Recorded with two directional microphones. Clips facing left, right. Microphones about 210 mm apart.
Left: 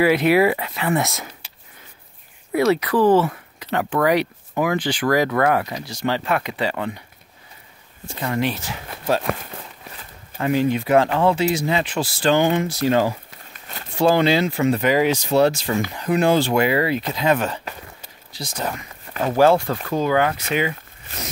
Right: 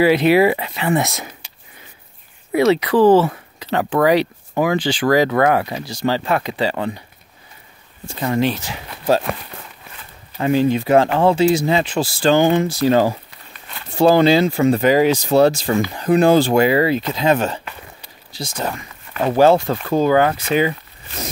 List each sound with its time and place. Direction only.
0.0 s speech: 30° right (ahead or behind)
2.8 s speech: 25° right (ahead or behind)
4.7 s speech: 90° right
5.1 s speech: 30° right (ahead or behind)
8.2 s speech: 25° right (ahead or behind)
8.5 s speech: 15° right (ahead or behind)
9.8 s walk: 35° left (ahead or behind)
10.4 s speech: 30° right (ahead or behind)
13.3 s walk: 45° left (ahead or behind)
13.9 s speech: 35° right (ahead or behind)
19.9 s speech: 35° right (ahead or behind)